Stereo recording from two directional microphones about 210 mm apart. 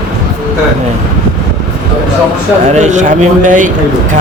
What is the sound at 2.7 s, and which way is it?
Speech, 35° right (ahead or behind).